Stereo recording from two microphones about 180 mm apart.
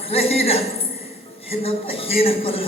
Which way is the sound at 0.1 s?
35° left (ahead or behind).